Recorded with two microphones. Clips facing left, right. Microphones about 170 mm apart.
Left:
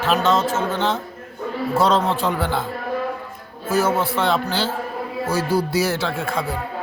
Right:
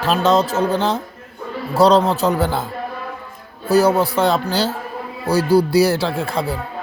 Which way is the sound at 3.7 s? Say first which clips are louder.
Right 5 dB; 40° right (ahead or behind).